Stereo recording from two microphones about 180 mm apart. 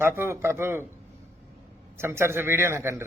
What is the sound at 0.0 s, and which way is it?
Speech, 15° right (ahead or behind).